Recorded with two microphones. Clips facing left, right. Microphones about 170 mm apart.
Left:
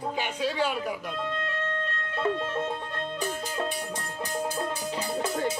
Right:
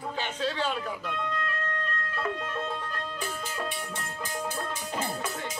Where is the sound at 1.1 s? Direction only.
25° left (ahead or behind).